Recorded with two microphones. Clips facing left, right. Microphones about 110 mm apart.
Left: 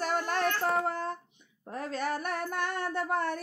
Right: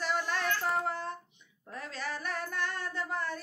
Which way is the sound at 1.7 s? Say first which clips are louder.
Left 6 dB; 50° left (ahead or behind).